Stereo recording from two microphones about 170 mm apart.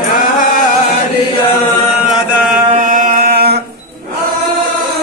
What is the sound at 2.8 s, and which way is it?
Chant, 50° right (ahead or behind).